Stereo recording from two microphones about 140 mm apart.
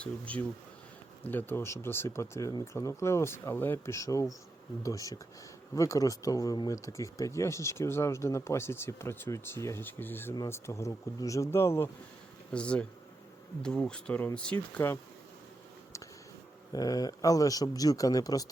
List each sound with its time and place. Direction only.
0.0 s speech: 10° left (ahead or behind)
12.5 s speech: 5° left (ahead or behind)
16.7 s speech: 25° left (ahead or behind)